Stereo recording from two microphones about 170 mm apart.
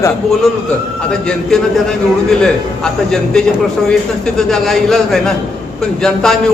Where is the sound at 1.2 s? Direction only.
5° left (ahead or behind).